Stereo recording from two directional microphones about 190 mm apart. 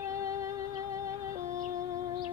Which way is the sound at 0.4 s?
15° right (ahead or behind).